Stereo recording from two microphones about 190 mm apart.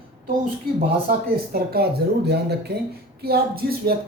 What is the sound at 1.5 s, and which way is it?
Speech, 55° right (ahead or behind).